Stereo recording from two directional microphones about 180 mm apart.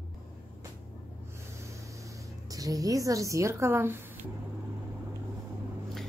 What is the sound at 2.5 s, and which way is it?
A woman's voice, 20° right (ahead or behind).